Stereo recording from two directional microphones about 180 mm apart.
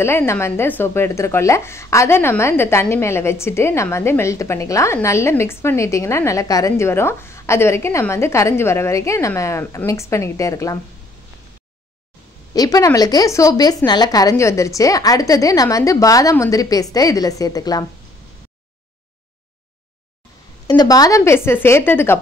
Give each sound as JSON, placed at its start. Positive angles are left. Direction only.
{"t": 0.0, "sound": "a woman's voice", "side_deg": 15}
{"t": 12.5, "sound": "a woman's voice", "side_deg": 20}
{"t": 20.6, "sound": "a woman's voice", "side_deg": 20}